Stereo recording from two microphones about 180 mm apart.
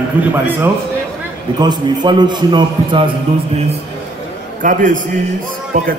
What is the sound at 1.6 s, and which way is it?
A man's voice, 25° right (ahead or behind).